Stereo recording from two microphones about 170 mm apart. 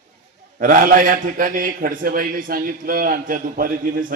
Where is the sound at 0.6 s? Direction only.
55° right (ahead or behind).